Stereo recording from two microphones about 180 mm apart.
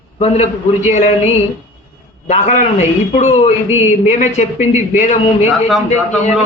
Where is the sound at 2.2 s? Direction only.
40° left (ahead or behind).